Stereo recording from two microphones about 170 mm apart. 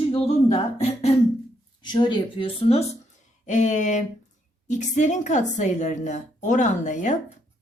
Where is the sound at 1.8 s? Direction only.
25° left (ahead or behind).